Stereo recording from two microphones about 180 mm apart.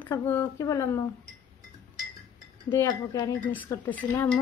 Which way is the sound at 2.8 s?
20° left (ahead or behind).